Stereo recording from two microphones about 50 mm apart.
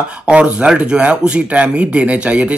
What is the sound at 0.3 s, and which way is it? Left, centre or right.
Speech, right.